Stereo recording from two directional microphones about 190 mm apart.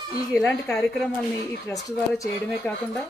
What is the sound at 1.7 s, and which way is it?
Speech, 15° left (ahead or behind).